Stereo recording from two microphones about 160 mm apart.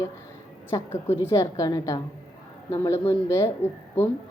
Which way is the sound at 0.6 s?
35° left (ahead or behind).